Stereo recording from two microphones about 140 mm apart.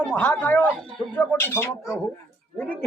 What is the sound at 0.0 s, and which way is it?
Speech, 10° left (ahead or behind).